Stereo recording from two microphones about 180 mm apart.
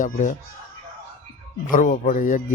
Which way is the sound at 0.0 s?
45° left (ahead or behind).